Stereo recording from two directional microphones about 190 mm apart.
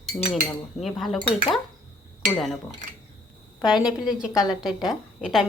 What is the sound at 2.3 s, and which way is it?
Speech, centre (ahead or behind).